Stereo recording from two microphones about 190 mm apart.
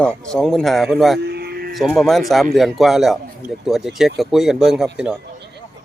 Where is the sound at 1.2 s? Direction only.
60° right (ahead or behind).